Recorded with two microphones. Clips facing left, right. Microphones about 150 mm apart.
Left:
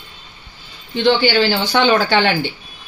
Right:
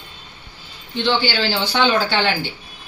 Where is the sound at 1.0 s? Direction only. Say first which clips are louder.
Left 6 dB; 55° left (ahead or behind).